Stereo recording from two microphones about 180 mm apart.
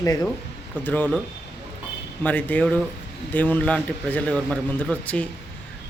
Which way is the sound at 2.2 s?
10° left (ahead or behind).